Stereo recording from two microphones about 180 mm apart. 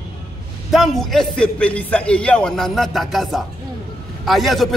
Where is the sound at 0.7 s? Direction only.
Centre (ahead or behind).